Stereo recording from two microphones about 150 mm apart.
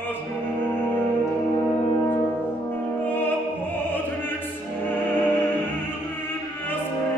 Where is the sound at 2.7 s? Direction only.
15° left (ahead or behind).